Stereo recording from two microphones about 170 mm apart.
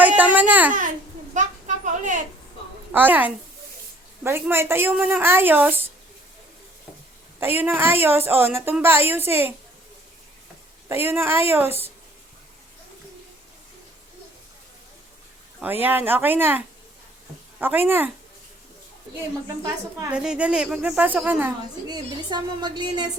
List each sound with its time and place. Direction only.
0.2 s a sound: 10° right (ahead or behind)
1.3 s a sound: 45° right (ahead or behind)
2.9 s a woman's voice: 10° right (ahead or behind)
7.3 s a woman's voice: 10° right (ahead or behind)
10.8 s a woman's voice: 15° right (ahead or behind)
15.6 s a woman's voice: 10° right (ahead or behind)
20.1 s a woman's voice: 5° right (ahead or behind)
21.8 s a woman's voice: 25° right (ahead or behind)